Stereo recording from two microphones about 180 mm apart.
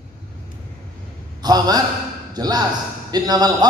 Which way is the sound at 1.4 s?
20° right (ahead or behind).